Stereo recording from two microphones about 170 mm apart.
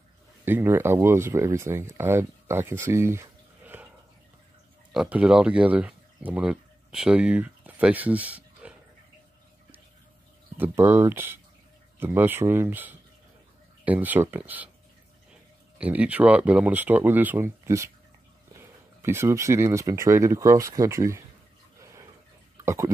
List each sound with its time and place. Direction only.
0.5 s speech: 10° right (ahead or behind)
4.9 s speech: 5° right (ahead or behind)
8.6 s a sound: 5° right (ahead or behind)
10.6 s speech: 15° right (ahead or behind)
15.8 s speech: 10° right (ahead or behind)